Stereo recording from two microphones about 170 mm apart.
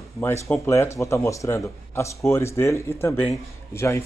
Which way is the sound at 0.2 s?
15° left (ahead or behind).